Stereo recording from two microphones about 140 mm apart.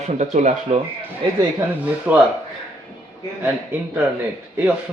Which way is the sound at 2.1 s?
10° right (ahead or behind).